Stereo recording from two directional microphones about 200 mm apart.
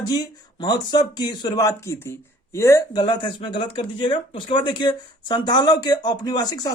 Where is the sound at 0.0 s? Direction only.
20° left (ahead or behind).